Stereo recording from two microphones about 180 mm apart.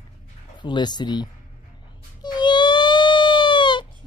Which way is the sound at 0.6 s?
25° left (ahead or behind).